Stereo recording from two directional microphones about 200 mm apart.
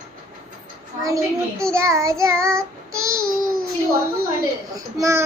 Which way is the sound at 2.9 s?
90° right.